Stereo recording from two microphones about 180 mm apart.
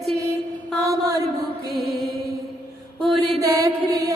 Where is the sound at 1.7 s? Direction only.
Centre (ahead or behind).